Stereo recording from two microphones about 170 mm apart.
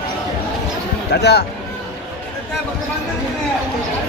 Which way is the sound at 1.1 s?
75° left (ahead or behind).